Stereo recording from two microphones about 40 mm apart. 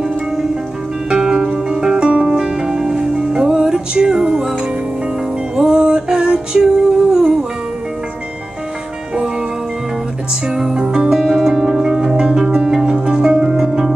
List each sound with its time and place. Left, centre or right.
1.1 s music: centre
5.6 s music: centre
10.5 s music: centre